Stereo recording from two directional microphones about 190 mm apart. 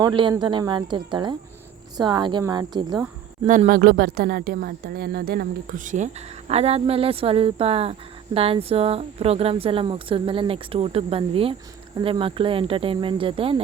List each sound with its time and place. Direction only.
0.0 s speech: 25° right (ahead or behind)
3.4 s speech: 40° right (ahead or behind)